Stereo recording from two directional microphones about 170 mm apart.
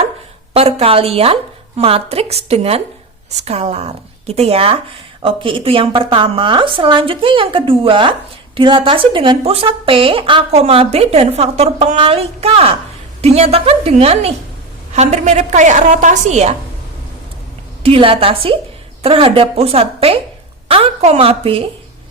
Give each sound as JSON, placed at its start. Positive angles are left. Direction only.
{"t": 0.5, "sound": "a woman's voice", "side_deg": -35}
{"t": 17.8, "sound": "a woman's voice", "side_deg": -35}